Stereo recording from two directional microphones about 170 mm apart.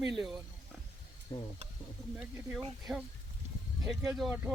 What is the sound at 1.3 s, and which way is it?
Stir, 20° left (ahead or behind).